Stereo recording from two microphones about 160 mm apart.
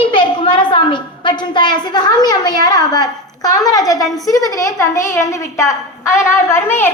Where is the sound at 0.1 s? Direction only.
30° left (ahead or behind).